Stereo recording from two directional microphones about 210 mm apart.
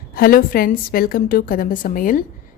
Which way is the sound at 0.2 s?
45° left (ahead or behind).